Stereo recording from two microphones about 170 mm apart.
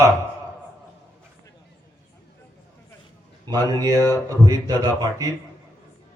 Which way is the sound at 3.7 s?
20° right (ahead or behind).